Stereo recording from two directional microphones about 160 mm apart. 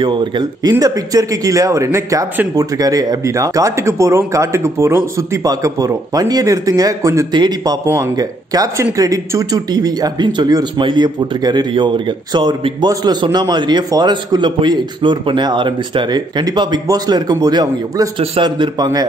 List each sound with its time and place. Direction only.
0.0 s speech: 30° right (ahead or behind)